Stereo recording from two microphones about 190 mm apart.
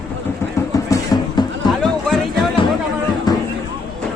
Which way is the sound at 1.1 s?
20° left (ahead or behind).